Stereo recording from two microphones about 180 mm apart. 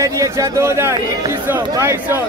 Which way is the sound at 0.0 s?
15° right (ahead or behind).